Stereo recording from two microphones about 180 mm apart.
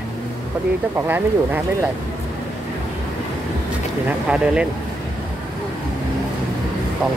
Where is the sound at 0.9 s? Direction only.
10° right (ahead or behind).